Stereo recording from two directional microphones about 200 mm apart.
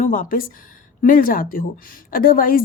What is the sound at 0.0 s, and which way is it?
A woman's voice, 40° left (ahead or behind).